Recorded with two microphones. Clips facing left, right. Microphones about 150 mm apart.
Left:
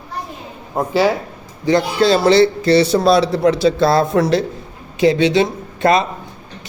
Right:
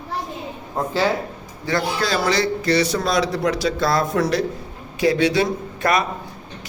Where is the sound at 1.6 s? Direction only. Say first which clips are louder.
Left 8 dB; 25° left (ahead or behind).